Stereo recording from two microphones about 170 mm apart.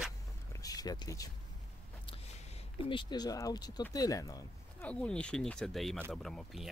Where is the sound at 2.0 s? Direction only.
30° left (ahead or behind).